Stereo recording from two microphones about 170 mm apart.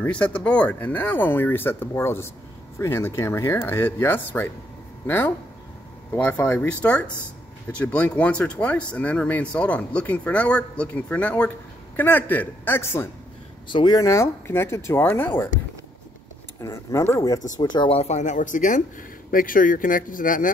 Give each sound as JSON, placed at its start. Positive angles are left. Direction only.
{"t": 0.0, "sound": "speech", "side_deg": 5}
{"t": 13.7, "sound": "speech", "side_deg": 25}
{"t": 16.6, "sound": "speech", "side_deg": 20}